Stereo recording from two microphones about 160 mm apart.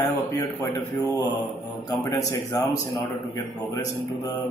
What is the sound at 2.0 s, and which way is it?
Speech, 20° left (ahead or behind).